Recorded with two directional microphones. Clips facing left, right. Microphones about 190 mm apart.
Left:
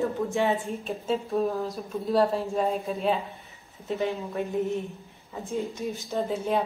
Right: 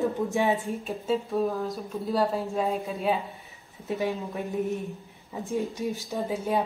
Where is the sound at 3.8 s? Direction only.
15° right (ahead or behind).